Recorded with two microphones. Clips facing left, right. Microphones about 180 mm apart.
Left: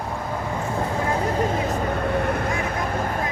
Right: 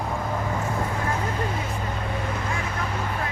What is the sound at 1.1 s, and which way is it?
Vehicle, 40° left (ahead or behind).